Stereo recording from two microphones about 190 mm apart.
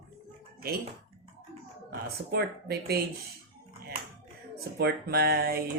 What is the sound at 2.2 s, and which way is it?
Speech, 55° right (ahead or behind).